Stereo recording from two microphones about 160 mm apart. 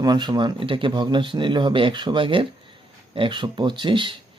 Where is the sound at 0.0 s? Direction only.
25° right (ahead or behind).